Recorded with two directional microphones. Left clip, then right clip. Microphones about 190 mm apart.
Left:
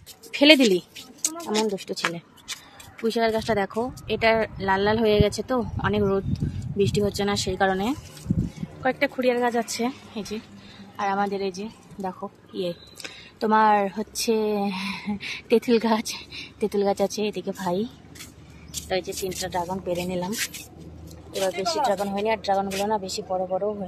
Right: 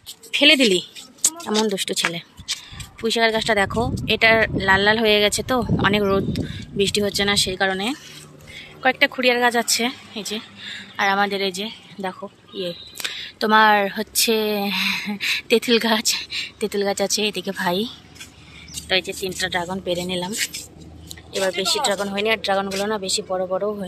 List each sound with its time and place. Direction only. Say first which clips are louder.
0.3 s speech: right 2 dB; 20° left (ahead or behind)
0.7 s a sound: right 3 dB; 5° left (ahead or behind)
1.4 s speech: right 3 dB; 5° right (ahead or behind)
3.0 s speech: right 4 dB; 5° left (ahead or behind)
8.8 s speech: right 5 dB; centre (ahead or behind)
21.8 s speech: right 3 dB; centre (ahead or behind)
23.3 s speech: right 1 dB; 10° right (ahead or behind)